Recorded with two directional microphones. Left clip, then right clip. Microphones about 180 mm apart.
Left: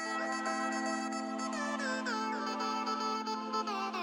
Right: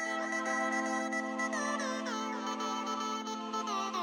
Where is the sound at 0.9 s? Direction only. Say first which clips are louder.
Right 2 dB; 5° left (ahead or behind).